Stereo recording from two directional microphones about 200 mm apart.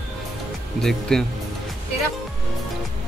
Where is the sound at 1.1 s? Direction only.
Centre (ahead or behind).